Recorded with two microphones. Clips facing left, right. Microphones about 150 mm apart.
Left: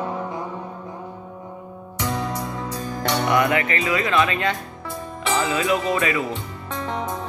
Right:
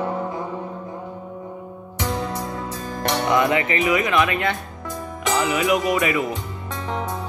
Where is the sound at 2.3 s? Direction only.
25° right (ahead or behind).